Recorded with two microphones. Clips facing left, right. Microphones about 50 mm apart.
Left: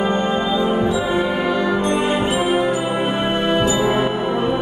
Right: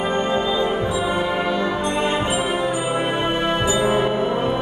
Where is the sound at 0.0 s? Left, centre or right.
Centre.